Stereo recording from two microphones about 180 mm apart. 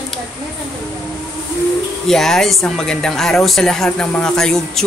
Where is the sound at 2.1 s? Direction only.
Centre (ahead or behind).